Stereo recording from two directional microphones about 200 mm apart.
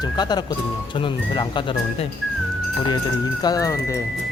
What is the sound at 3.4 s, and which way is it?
Speech, 20° left (ahead or behind).